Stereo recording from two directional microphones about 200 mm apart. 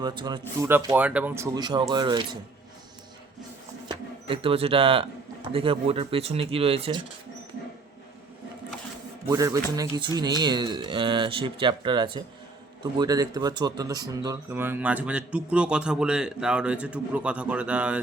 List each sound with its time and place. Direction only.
0.0 s speech: 20° right (ahead or behind)
0.7 s speech: 10° right (ahead or behind)
3.8 s speech: 25° right (ahead or behind)
9.3 s speech: 15° right (ahead or behind)